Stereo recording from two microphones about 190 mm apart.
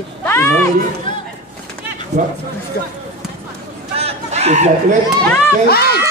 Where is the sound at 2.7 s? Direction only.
55° left (ahead or behind).